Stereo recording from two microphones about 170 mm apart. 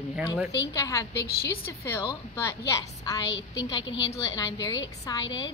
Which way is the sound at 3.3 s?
90° left.